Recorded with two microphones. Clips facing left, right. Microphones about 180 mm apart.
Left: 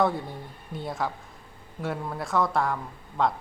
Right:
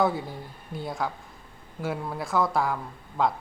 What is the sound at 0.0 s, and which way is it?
Speech, centre (ahead or behind).